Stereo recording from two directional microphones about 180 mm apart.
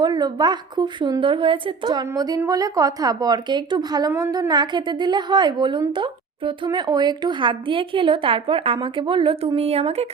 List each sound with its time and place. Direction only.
0.0 s a woman's voice: 25° right (ahead or behind)